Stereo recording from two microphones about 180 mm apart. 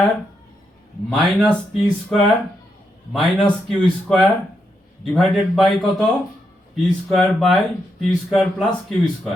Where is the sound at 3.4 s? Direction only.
Centre (ahead or behind).